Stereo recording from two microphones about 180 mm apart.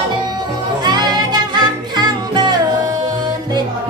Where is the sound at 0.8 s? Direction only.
25° right (ahead or behind).